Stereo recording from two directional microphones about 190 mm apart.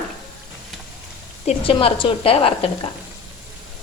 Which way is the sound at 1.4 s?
30° left (ahead or behind).